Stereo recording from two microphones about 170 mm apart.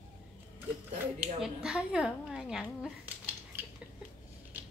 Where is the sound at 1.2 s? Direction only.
5° right (ahead or behind).